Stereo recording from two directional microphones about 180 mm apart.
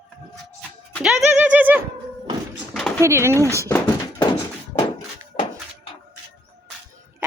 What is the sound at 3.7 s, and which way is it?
Thunk, 15° left (ahead or behind).